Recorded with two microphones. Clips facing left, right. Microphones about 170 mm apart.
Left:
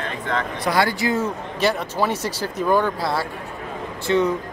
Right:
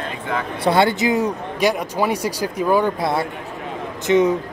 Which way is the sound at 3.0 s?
20° right (ahead or behind).